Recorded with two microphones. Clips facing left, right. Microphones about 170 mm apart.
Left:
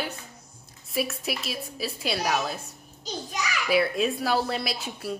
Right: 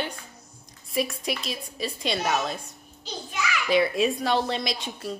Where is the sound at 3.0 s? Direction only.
40° left (ahead or behind).